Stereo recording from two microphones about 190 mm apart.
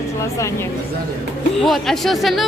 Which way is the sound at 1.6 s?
Centre (ahead or behind).